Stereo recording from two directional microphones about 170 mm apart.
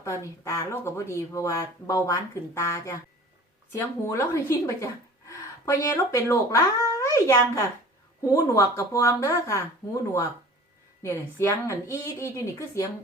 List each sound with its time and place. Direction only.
0.0 s a child's voice: 15° left (ahead or behind)